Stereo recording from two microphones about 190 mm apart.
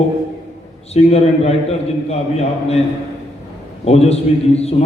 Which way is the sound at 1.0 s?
35° left (ahead or behind).